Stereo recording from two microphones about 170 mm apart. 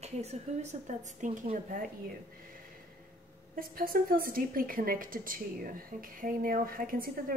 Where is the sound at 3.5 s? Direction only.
55° right (ahead or behind).